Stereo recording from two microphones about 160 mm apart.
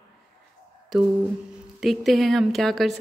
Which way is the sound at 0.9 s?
Centre (ahead or behind).